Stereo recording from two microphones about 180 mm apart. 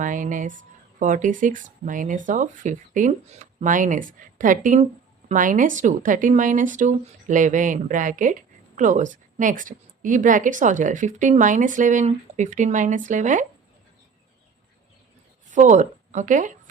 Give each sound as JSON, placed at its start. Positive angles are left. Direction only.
{"t": 0.0, "sound": "speech", "side_deg": -45}
{"t": 15.4, "sound": "speech", "side_deg": -45}